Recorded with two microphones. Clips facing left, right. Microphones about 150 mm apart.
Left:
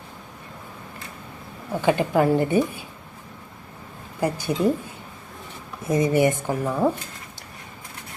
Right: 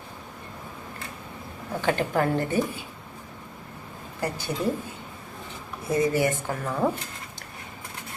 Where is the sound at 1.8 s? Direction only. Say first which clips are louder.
Left 5 dB; 15° left (ahead or behind).